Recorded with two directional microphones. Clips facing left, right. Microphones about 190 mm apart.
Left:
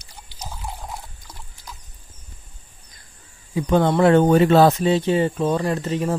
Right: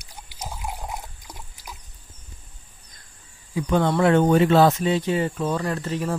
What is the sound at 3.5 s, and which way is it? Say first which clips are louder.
Speech: left 3 dB; 30° left (ahead or behind).